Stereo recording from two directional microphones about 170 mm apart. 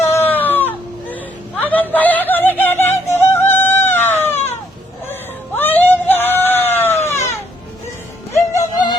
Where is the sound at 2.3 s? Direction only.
10° left (ahead or behind).